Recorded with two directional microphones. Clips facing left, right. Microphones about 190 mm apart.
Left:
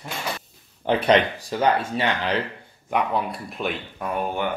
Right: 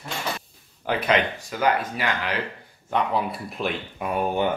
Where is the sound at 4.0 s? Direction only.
20° right (ahead or behind).